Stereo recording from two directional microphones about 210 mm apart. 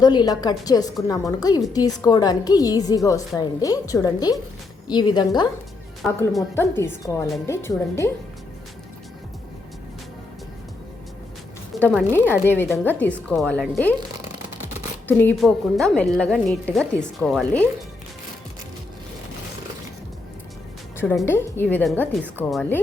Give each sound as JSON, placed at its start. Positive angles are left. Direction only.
{"t": 0.0, "sound": "a woman's voice", "side_deg": 20}
{"t": 6.0, "sound": "a woman's voice", "side_deg": 5}
{"t": 11.7, "sound": "a sound", "side_deg": 0}
{"t": 12.1, "sound": "a woman's voice", "side_deg": 10}
{"t": 15.0, "sound": "a woman's voice", "side_deg": 10}
{"t": 21.2, "sound": "a woman's voice", "side_deg": 10}